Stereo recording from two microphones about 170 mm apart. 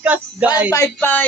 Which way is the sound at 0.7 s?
15° left (ahead or behind).